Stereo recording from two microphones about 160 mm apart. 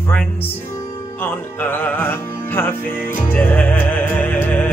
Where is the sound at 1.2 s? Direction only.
10° left (ahead or behind).